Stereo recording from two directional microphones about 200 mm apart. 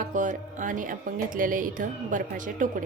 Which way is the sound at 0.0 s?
40° right (ahead or behind).